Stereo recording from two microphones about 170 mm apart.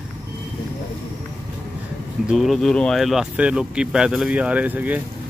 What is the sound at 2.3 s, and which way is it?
Speech, centre (ahead or behind).